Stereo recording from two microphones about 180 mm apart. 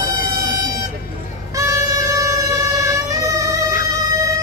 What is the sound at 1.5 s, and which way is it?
Music, 15° right (ahead or behind).